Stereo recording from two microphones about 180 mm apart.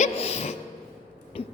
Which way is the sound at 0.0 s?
35° left (ahead or behind).